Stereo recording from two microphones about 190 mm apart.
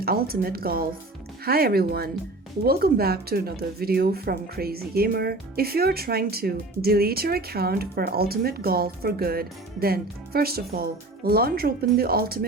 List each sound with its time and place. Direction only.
0.0 s speech: 50° right (ahead or behind)